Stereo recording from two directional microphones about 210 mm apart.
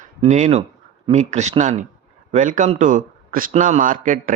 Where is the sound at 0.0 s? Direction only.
35° right (ahead or behind).